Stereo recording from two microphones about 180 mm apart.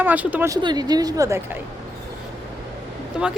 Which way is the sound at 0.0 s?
10° right (ahead or behind).